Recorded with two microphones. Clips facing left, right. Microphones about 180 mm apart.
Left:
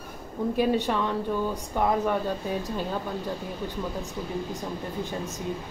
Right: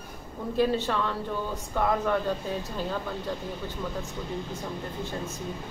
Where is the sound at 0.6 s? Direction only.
15° left (ahead or behind).